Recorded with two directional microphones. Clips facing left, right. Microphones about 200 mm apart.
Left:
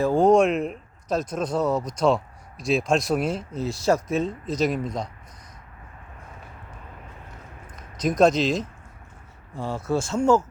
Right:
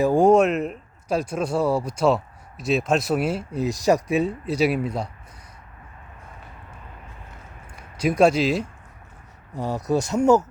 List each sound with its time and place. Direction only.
0.0 s a man's voice: 15° right (ahead or behind)
7.8 s speech: 10° right (ahead or behind)
9.7 s speech: 20° right (ahead or behind)